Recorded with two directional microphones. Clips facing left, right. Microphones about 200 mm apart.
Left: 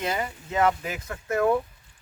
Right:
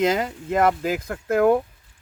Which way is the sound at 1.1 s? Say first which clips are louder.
Right 5 dB; 60° right (ahead or behind).